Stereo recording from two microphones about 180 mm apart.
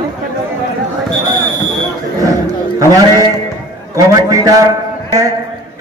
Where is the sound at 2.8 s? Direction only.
20° right (ahead or behind).